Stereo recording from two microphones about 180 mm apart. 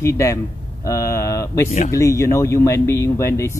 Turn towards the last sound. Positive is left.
turn(degrees=15)  # may be behind; listen again after turning